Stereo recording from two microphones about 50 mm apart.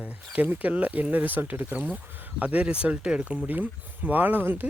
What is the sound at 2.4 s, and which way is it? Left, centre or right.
Speech, right.